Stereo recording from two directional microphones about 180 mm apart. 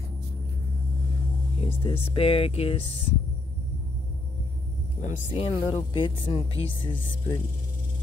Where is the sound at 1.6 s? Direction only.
30° left (ahead or behind).